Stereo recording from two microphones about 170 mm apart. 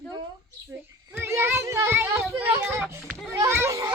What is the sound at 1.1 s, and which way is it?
Speech, 15° right (ahead or behind).